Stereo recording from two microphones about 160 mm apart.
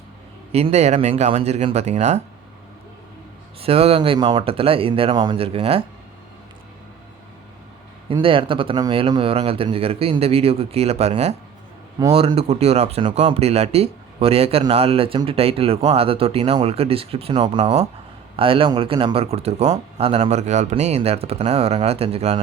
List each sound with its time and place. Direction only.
0.5 s speech: 40° right (ahead or behind)
3.6 s speech: 40° right (ahead or behind)
8.1 s speech: 35° right (ahead or behind)